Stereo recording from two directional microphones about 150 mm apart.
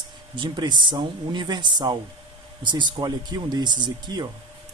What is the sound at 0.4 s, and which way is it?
Speech, 30° right (ahead or behind).